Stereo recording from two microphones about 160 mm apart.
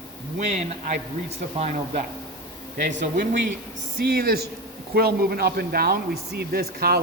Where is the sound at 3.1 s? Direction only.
70° right (ahead or behind).